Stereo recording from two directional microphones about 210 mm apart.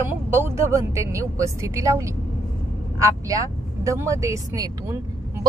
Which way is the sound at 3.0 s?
15° right (ahead or behind).